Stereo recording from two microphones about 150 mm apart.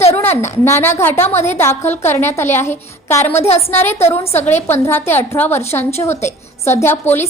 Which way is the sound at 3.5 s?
40° left (ahead or behind).